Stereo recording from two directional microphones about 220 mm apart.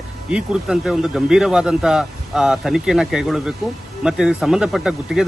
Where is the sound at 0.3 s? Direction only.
5° right (ahead or behind).